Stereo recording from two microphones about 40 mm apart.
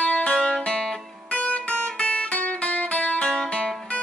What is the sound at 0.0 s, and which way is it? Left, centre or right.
Music, left.